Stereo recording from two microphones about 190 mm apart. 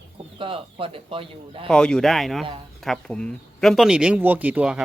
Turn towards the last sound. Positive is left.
turn(degrees=-5)  # may be behind; listen again after turning